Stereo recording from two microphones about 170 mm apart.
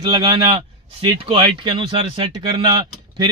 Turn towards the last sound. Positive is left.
turn(degrees=-25)  # may be behind; listen again after turning